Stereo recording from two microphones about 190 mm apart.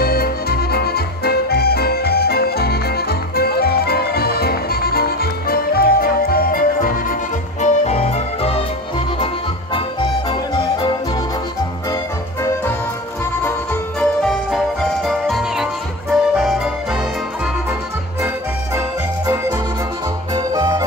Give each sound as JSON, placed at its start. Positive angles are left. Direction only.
{"t": 0.0, "sound": "music", "side_deg": 55}
{"t": 7.6, "sound": "music", "side_deg": 35}
{"t": 13.9, "sound": "music", "side_deg": 0}
{"t": 20.3, "sound": "music", "side_deg": -20}